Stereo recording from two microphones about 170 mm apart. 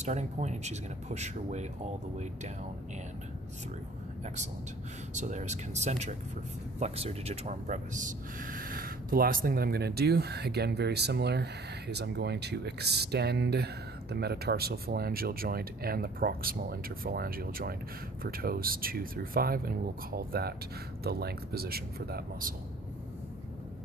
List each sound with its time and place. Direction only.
0.0 s speech: 40° right (ahead or behind)
5.1 s speech: 45° right (ahead or behind); by 22.5 s 65° right (ahead or behind)